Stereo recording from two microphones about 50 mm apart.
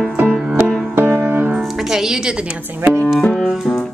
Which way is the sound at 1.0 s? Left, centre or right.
Right.